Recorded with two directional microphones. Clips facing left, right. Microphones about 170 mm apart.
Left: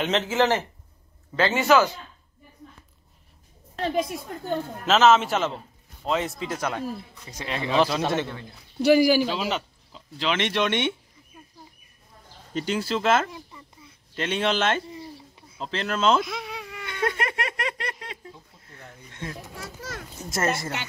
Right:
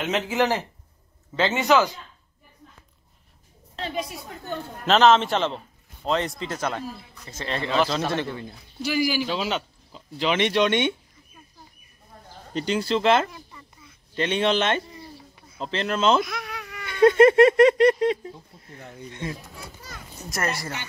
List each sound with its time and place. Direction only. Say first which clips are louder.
0.0 s speech: left 1 dB; 10° right (ahead or behind)
3.7 s a sound: left 5 dB; 50° left (ahead or behind)
4.8 s a man's voice: right 1 dB; 5° left (ahead or behind)
8.8 s speech: left 7 dB; 50° left (ahead or behind)
9.3 s speech: right 1 dB; 5° left (ahead or behind)
12.5 s speech: right 2 dB; 5° left (ahead or behind)
16.3 s baby cry: even; 25° left (ahead or behind)
17.0 s speech: right 14 dB; 30° right (ahead or behind)
19.5 s a child's voice: left 5 dB; 90° left
20.2 s a woman's voice: left 2 dB; 25° left (ahead or behind)